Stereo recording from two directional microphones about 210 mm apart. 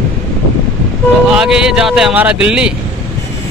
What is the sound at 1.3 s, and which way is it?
Speech, 5° right (ahead or behind).